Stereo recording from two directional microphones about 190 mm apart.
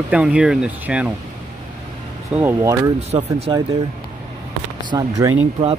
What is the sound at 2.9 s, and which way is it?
Speech, 35° right (ahead or behind).